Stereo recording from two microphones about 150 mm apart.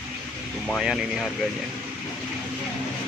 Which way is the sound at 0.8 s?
Centre (ahead or behind).